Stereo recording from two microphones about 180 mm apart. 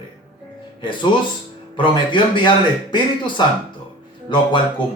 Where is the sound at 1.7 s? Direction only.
25° left (ahead or behind).